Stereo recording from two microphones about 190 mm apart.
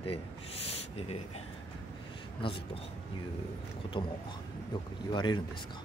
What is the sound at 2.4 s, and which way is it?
Speech, 25° left (ahead or behind).